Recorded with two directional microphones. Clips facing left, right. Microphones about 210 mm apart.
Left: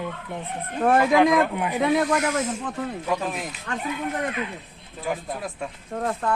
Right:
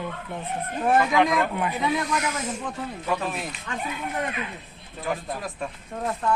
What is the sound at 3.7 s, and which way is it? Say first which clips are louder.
Speech: left 3 dB; 60° left (ahead or behind).